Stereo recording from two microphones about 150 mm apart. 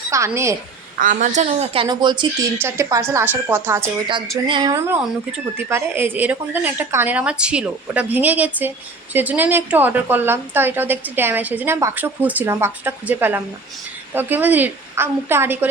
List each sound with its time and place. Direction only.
0.1 s a woman's voice: 20° right (ahead or behind)
0.9 s a woman's voice: 60° right (ahead or behind)
1.5 s speech: 40° right (ahead or behind)
2.6 s a woman's voice: 15° right (ahead or behind)
4.4 s speech: 35° right (ahead or behind)
4.7 s a woman's voice: 15° right (ahead or behind)